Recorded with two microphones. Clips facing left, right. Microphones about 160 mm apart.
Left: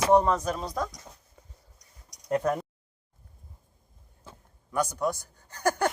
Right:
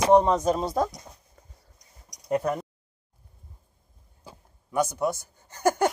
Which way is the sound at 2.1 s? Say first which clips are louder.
Right 1 dB; 5° right (ahead or behind).